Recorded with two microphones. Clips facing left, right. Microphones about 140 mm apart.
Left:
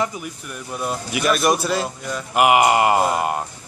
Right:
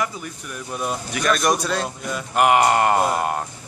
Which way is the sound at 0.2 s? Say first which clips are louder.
Left 1 dB; centre (ahead or behind).